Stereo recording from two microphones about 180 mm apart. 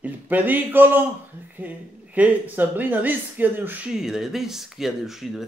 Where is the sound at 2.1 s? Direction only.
10° right (ahead or behind).